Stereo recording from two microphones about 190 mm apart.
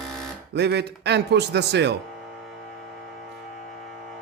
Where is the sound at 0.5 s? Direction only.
60° right (ahead or behind).